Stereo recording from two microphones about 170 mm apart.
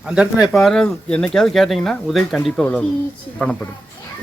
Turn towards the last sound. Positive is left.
turn(degrees=5)  # may be behind; listen again after turning